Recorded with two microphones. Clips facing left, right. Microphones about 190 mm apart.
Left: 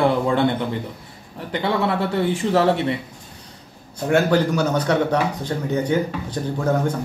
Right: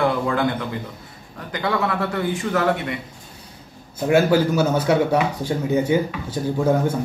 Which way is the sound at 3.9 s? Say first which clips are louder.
Right 1 dB; 5° right (ahead or behind).